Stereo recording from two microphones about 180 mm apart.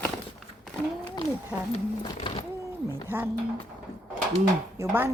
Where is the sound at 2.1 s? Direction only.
30° left (ahead or behind).